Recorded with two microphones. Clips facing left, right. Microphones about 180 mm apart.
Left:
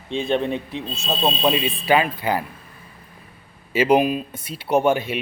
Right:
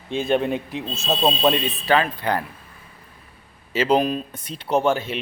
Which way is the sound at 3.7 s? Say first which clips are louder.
Left 2 dB; 10° left (ahead or behind).